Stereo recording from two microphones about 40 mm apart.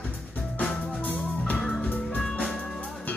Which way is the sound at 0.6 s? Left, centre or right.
Left.